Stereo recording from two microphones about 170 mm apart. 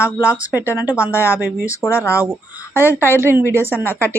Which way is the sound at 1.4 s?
10° right (ahead or behind).